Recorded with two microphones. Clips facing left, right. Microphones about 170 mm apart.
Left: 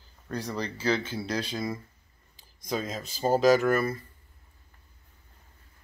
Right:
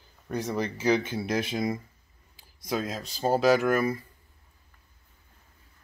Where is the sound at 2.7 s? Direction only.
Centre (ahead or behind).